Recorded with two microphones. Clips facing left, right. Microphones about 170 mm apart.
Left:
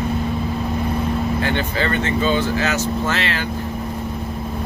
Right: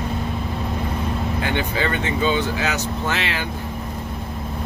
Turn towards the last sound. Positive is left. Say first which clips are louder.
# left 3 dB
turn(degrees=-15)  # may be behind; listen again after turning